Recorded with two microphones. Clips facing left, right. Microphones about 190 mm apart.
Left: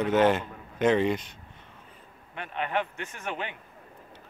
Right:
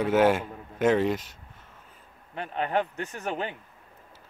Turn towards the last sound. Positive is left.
turn(degrees=-40)  # may be behind; listen again after turning